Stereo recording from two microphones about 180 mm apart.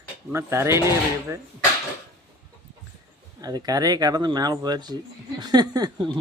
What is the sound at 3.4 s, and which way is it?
Speech, 20° right (ahead or behind).